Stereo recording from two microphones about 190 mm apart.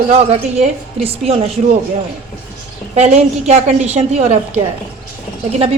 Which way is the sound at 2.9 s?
35° right (ahead or behind).